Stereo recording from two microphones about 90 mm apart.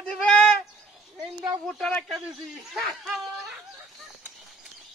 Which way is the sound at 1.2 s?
5° right (ahead or behind).